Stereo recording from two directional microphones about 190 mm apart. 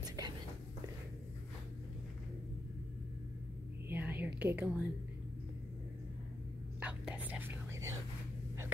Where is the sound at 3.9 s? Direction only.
10° right (ahead or behind).